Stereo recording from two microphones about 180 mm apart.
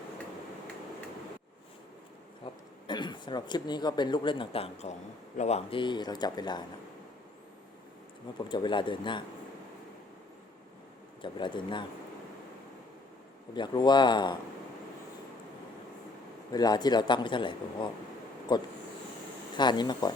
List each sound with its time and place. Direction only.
2.4 s a man's voice: 25° left (ahead or behind)
8.4 s a man's voice: 25° left (ahead or behind)
11.2 s a man's voice: 25° left (ahead or behind)
13.5 s a man's voice: 25° left (ahead or behind)
16.5 s a man's voice: 20° left (ahead or behind)